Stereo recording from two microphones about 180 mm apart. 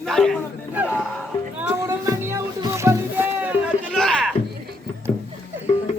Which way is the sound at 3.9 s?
5° left (ahead or behind).